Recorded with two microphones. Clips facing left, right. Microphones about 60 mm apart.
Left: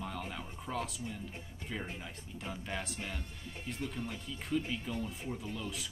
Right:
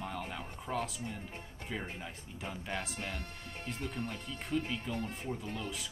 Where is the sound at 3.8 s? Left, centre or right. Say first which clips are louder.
Even; right.